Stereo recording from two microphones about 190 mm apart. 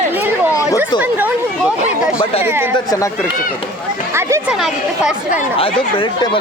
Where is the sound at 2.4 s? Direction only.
10° right (ahead or behind).